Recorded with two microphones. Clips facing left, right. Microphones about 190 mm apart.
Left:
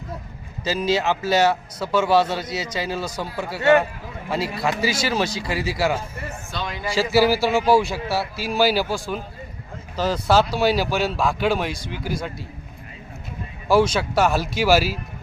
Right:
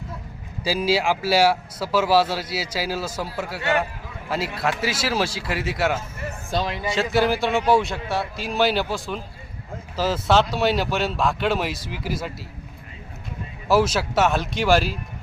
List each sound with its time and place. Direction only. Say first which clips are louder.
0.6 s speech: even; 10° right (ahead or behind)
4.3 s a man's voice: left 1 dB; centre (ahead or behind)
6.5 s speech: right 6 dB; 35° right (ahead or behind)
6.8 s a man's voice: left 4 dB; centre (ahead or behind)
13.7 s a man's voice: left 2 dB; 5° right (ahead or behind)